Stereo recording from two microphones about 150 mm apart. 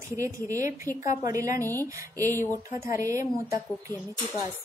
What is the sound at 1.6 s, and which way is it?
Speech, 15° left (ahead or behind).